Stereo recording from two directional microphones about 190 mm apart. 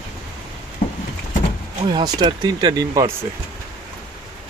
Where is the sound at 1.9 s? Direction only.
20° right (ahead or behind).